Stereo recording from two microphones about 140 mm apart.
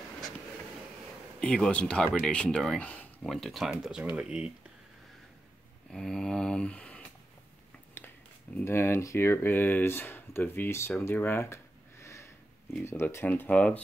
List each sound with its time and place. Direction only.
1.4 s speech: 5° left (ahead or behind)
5.9 s a sound: 5° left (ahead or behind)
8.5 s speech: 15° left (ahead or behind)